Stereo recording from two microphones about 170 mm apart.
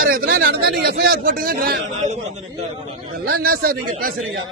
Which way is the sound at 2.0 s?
40° right (ahead or behind).